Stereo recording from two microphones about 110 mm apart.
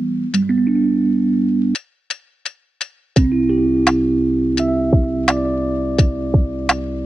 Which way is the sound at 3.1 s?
5° left (ahead or behind).